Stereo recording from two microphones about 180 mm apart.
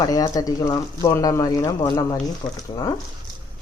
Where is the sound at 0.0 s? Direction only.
20° left (ahead or behind).